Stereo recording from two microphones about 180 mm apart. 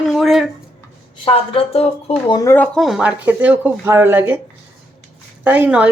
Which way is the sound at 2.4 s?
15° left (ahead or behind).